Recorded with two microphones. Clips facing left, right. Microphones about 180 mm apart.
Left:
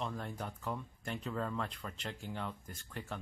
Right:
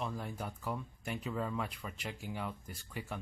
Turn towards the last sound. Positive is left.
turn(degrees=-10)  # may be behind; listen again after turning